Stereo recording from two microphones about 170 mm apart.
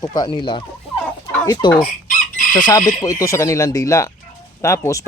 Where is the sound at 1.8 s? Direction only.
50° left (ahead or behind).